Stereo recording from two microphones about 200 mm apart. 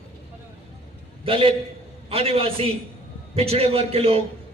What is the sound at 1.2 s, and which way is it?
A man's voice, 25° right (ahead or behind).